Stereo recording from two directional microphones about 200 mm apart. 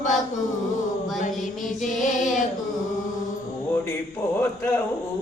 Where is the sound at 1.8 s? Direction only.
40° left (ahead or behind).